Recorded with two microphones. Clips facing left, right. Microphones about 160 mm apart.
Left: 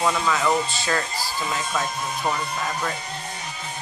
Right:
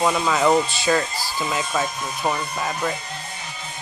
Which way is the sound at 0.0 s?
15° right (ahead or behind).